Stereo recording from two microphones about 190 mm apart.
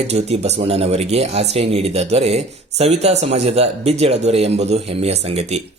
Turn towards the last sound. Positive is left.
turn(degrees=-35)  # may be behind; listen again after turning